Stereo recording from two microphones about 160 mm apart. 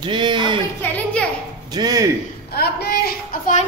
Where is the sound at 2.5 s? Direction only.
80° left.